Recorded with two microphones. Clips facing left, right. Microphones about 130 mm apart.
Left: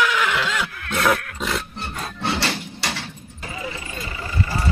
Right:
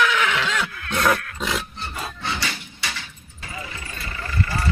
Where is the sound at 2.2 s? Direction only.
70° left (ahead or behind).